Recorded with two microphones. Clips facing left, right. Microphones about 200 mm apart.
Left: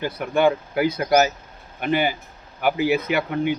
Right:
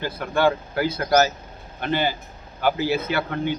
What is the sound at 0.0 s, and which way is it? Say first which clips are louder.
A man's voice: left 2 dB; 15° left (ahead or behind).